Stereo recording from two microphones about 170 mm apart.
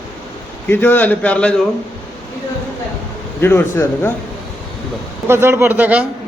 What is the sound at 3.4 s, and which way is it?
Speech, 15° left (ahead or behind).